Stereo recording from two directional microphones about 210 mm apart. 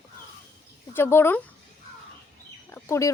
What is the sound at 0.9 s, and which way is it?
Speech, 10° left (ahead or behind).